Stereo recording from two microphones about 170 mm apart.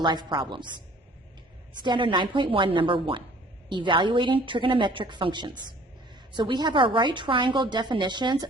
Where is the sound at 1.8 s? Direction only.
30° right (ahead or behind).